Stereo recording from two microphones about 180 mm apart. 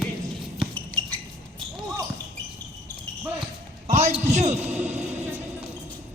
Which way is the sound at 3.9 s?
40° right (ahead or behind).